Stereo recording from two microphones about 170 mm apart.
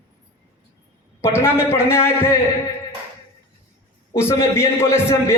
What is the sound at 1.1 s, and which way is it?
A man's voice, 15° left (ahead or behind).